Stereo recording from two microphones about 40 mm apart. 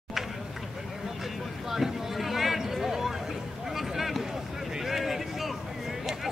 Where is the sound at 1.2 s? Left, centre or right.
Centre.